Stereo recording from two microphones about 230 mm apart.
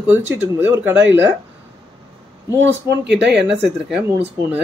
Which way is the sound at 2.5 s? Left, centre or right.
Right.